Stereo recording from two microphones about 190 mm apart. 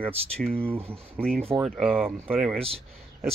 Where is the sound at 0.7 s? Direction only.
30° right (ahead or behind).